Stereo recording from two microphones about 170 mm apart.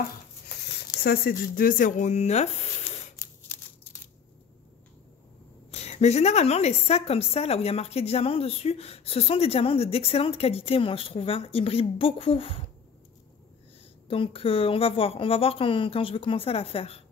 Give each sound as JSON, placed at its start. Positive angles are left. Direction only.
{"t": 1.0, "sound": "speech", "side_deg": 65}
{"t": 3.2, "sound": "a sound", "side_deg": 15}
{"t": 5.7, "sound": "a woman's voice", "side_deg": 40}
{"t": 14.0, "sound": "a woman's voice", "side_deg": 35}